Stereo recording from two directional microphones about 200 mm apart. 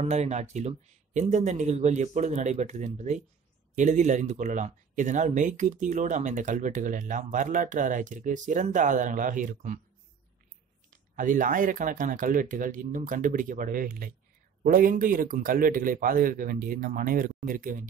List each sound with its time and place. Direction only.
0.0 s speech: 35° right (ahead or behind)
10.9 s a man's voice: 40° right (ahead or behind)